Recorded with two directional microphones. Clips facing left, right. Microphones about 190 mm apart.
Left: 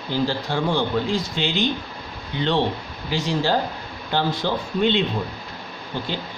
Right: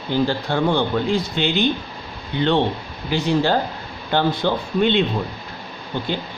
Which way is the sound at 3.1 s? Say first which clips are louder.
Right 3 dB; 60° right (ahead or behind).